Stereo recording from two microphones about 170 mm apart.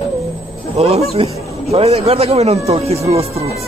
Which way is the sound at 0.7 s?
40° right (ahead or behind).